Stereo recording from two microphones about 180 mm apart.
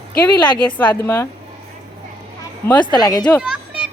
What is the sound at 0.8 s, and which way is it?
Speech, 10° left (ahead or behind).